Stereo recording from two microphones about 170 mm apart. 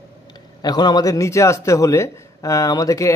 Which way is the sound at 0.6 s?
25° left (ahead or behind).